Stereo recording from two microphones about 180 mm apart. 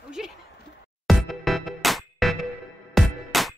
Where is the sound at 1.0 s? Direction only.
Centre (ahead or behind).